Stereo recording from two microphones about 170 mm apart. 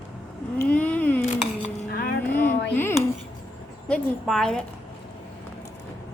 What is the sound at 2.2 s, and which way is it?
Music, 10° left (ahead or behind).